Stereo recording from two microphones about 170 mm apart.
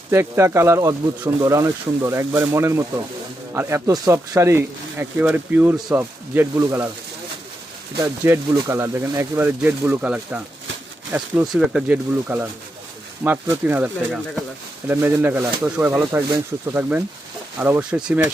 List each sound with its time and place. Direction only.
0.1 s speech: 15° right (ahead or behind)
8.0 s speech: 15° right (ahead or behind)